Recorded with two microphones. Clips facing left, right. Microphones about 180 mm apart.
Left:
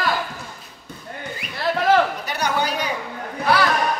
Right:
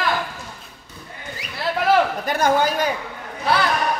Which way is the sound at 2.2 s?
50° right (ahead or behind).